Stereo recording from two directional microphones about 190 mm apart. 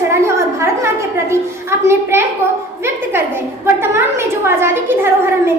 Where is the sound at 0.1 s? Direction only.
15° right (ahead or behind).